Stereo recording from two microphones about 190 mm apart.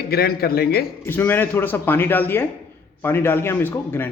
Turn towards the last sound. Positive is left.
turn(degrees=10)  # may be behind; listen again after turning